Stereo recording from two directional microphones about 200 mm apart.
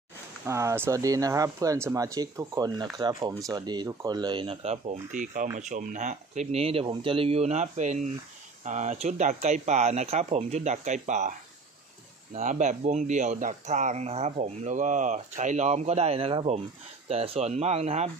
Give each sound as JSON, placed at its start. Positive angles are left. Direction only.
{"t": 0.5, "sound": "speech", "side_deg": -15}
{"t": 12.4, "sound": "speech", "side_deg": -40}